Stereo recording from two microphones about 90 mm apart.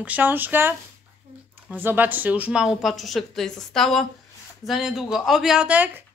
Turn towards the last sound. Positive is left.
turn(degrees=-15)  # may be behind; listen again after turning